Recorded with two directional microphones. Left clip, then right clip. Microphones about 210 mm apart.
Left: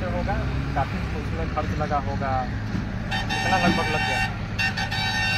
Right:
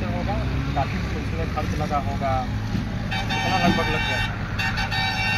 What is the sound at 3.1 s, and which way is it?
Speech, 45° left (ahead or behind).